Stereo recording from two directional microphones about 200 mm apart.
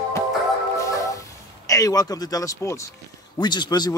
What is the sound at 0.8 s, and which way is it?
Music, 15° left (ahead or behind).